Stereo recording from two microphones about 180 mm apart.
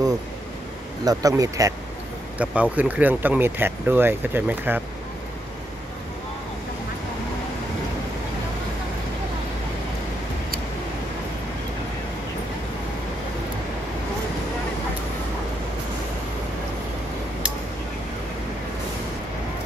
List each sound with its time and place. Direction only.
1.0 s speech: 20° right (ahead or behind)
2.3 s speech: 5° right (ahead or behind)